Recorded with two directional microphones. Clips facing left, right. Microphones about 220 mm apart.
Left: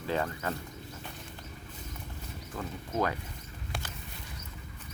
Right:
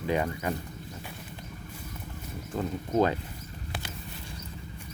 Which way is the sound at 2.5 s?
30° right (ahead or behind).